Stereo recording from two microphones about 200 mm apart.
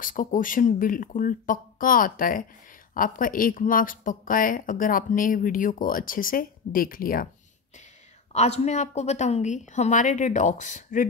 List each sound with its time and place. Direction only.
0.0 s speech: 40° left (ahead or behind)
8.3 s a woman's voice: 35° left (ahead or behind)